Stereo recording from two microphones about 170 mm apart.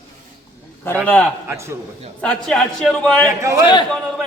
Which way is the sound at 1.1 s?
5° left (ahead or behind).